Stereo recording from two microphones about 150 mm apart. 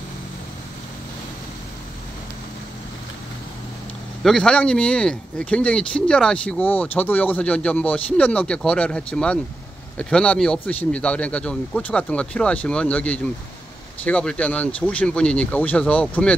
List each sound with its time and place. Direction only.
4.2 s speech: 5° left (ahead or behind)